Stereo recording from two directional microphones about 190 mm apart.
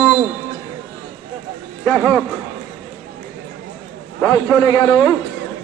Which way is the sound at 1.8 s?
10° left (ahead or behind).